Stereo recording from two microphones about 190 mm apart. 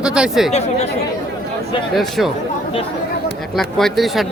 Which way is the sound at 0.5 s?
35° left (ahead or behind).